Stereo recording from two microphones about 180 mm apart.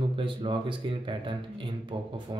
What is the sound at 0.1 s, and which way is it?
A man's voice, 30° right (ahead or behind).